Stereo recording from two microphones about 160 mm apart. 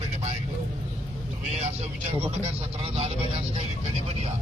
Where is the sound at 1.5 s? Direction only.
45° right (ahead or behind).